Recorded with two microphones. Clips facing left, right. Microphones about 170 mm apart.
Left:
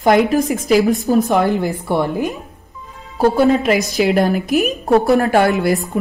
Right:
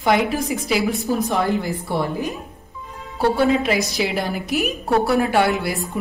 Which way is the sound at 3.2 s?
45° left (ahead or behind).